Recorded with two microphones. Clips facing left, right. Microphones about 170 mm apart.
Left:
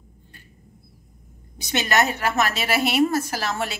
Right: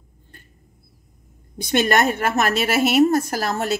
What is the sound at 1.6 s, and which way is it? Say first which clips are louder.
A woman's voice: right 4 dB; 50° right (ahead or behind).